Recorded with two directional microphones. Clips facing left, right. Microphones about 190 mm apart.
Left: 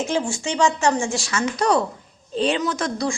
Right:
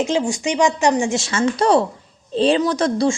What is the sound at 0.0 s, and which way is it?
Speech, 20° right (ahead or behind).